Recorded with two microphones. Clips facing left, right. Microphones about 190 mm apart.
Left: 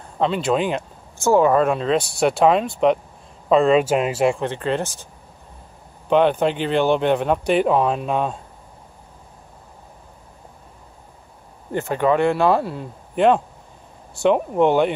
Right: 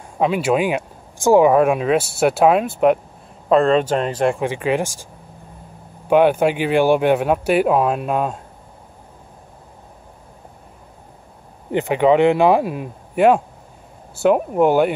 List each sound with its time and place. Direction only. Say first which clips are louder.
0.2 s speech: right 2 dB; 10° right (ahead or behind); by 4.4 s 5° left (ahead or behind)
4.4 s speech: right 3 dB; 10° right (ahead or behind)
6.0 s speech: right 3 dB; 10° right (ahead or behind)
11.7 s speech: right 4 dB; 15° right (ahead or behind)